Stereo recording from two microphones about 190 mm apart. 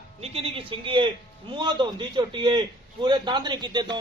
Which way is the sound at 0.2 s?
30° right (ahead or behind).